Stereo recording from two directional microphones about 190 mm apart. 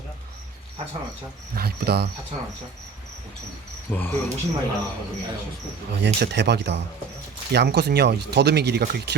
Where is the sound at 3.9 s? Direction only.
10° left (ahead or behind).